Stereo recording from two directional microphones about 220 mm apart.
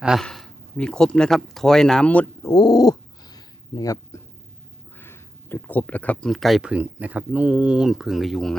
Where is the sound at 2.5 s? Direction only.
15° left (ahead or behind).